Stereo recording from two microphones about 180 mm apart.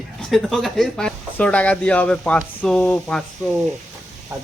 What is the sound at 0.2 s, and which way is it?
Speech, centre (ahead or behind).